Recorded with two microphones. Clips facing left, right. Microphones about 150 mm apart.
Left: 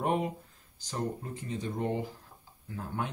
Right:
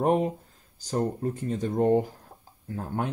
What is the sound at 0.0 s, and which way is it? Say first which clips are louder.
Speech: right 6 dB; 40° right (ahead or behind).